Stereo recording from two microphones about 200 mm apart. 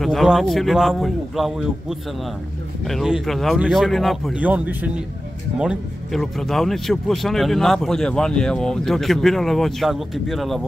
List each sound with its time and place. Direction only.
0.0 s speech: centre (ahead or behind)